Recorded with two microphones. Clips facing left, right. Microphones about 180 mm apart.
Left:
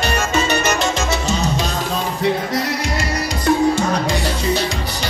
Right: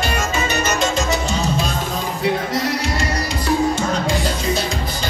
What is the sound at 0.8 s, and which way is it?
Salsa music, 75° left (ahead or behind).